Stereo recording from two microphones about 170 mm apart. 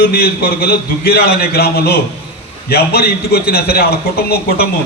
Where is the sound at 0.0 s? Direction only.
65° left (ahead or behind).